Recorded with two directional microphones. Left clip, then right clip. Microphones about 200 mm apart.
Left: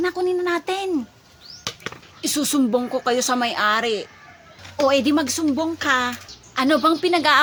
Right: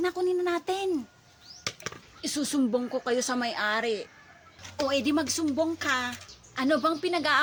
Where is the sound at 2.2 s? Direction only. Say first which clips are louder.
Left 7 dB; 20° left (ahead or behind).